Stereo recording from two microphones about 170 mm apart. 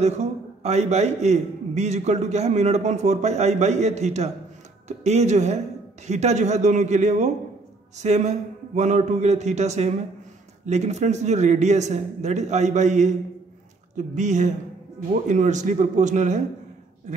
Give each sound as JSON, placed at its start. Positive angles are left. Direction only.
{"t": 0.0, "sound": "a man's voice", "side_deg": -40}